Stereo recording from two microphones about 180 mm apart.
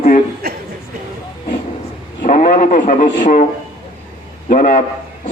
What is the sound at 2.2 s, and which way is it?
A man's voice, 45° left (ahead or behind).